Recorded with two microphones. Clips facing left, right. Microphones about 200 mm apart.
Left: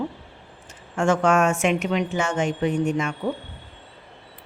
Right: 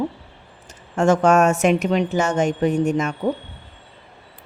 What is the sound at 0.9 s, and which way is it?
Speech, 40° right (ahead or behind).